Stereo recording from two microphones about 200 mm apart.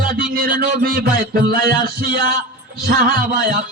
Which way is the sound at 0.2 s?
45° right (ahead or behind).